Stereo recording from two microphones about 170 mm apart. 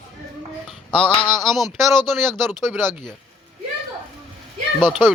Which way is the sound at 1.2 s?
25° left (ahead or behind).